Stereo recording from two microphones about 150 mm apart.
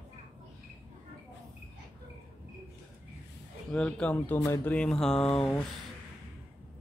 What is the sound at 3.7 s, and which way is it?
Speech, 5° left (ahead or behind).